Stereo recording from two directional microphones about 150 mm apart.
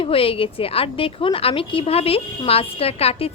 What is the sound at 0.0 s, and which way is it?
A woman's voice, 40° left (ahead or behind).